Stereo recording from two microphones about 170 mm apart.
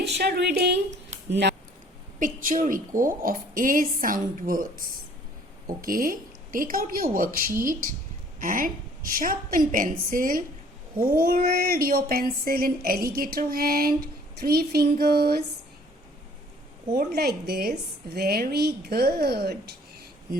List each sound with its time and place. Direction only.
0.0 s a woman's voice: 75° right (ahead or behind)
2.1 s a woman's voice: 50° right (ahead or behind); by 15.4 s 65° right (ahead or behind)
17.1 s a woman's voice: 65° right (ahead or behind)